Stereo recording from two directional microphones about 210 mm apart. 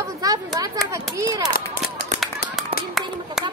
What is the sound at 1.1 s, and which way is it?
Speech, 15° right (ahead or behind).